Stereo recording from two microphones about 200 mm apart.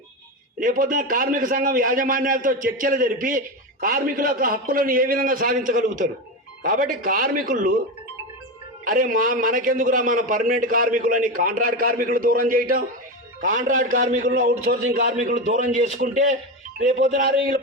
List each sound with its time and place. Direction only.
0.6 s a man's voice: 45° right (ahead or behind)
8.8 s a man's voice: 45° right (ahead or behind)